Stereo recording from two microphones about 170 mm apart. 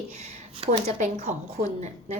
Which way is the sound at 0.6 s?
35° right (ahead or behind).